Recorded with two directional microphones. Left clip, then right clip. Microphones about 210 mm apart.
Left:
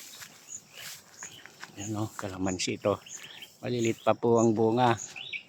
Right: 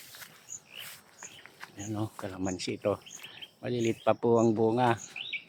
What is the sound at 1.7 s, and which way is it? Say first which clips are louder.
Speech: left 1 dB; 5° left (ahead or behind).